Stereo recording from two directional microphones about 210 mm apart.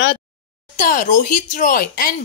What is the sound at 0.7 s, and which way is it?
Speech, 40° left (ahead or behind).